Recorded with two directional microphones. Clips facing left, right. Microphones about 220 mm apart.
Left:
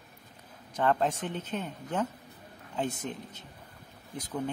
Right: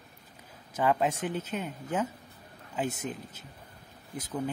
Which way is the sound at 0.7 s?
5° right (ahead or behind).